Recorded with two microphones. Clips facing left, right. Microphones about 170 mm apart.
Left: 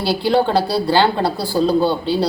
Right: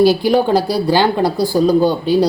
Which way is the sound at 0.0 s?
15° right (ahead or behind).